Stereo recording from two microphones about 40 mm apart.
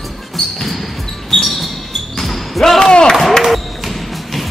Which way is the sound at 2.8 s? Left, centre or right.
Left.